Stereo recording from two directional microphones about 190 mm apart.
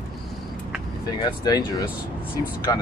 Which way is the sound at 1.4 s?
20° left (ahead or behind).